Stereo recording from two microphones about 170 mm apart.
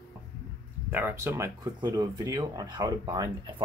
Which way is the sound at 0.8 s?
10° right (ahead or behind).